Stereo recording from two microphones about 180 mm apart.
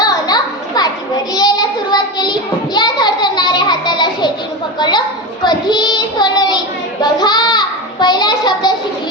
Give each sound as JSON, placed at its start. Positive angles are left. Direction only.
{"t": 0.0, "sound": "children playing", "side_deg": 20}
{"t": 1.3, "sound": "child singing", "side_deg": 20}